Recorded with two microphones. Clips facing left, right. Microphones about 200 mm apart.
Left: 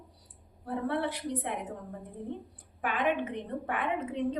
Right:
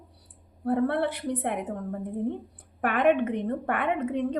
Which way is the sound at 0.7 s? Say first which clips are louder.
Right 7 dB; 60° right (ahead or behind).